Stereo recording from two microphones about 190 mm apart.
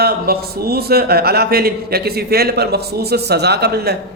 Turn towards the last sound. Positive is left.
turn(degrees=-55)  # may be behind; listen again after turning